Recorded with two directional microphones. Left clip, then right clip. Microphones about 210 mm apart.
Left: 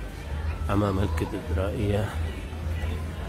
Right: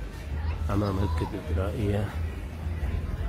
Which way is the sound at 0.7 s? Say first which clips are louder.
Left 3 dB; 10° left (ahead or behind).